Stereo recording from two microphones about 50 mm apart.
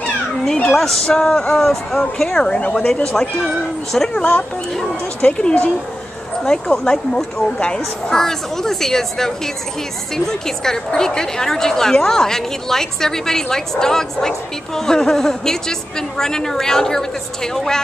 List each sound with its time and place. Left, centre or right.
0.0 s speech: centre
1.5 s a woman's voice: centre
4.1 s a woman's voice: left; by 17.8 s centre